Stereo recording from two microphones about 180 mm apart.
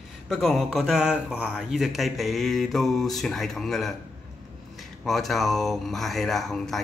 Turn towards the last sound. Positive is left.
turn(degrees=0)  # may be behind; listen again after turning